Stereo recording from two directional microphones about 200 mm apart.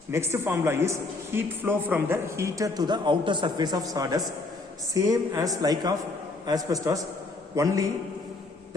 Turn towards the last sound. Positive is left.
turn(degrees=-15)  # may be behind; listen again after turning